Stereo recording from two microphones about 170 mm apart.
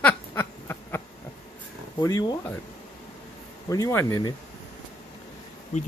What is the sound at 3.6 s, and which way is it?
Speech, 20° left (ahead or behind).